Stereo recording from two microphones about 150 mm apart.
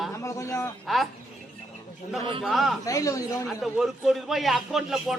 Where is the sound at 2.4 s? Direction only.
Centre (ahead or behind).